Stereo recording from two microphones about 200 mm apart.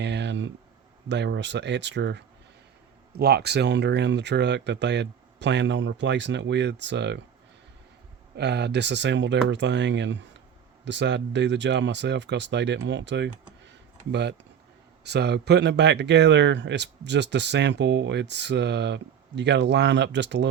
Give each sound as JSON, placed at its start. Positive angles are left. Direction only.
{"t": 0.0, "sound": "a sound", "side_deg": -60}
{"t": 1.0, "sound": "speech", "side_deg": -60}
{"t": 8.4, "sound": "speech", "side_deg": -55}